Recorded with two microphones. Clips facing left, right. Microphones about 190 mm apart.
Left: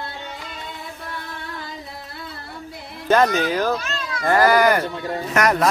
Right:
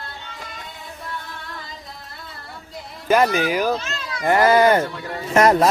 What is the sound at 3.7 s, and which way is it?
A child's voice, 20° right (ahead or behind).